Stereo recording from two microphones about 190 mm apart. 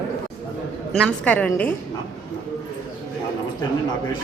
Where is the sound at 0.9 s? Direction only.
5° left (ahead or behind).